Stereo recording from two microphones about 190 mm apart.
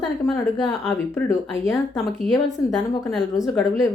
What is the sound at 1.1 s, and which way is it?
Speech, 15° left (ahead or behind).